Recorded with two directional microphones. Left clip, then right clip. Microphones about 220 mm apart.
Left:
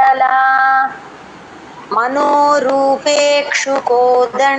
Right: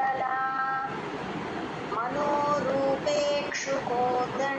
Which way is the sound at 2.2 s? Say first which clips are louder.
Left 15 dB; 45° left (ahead or behind).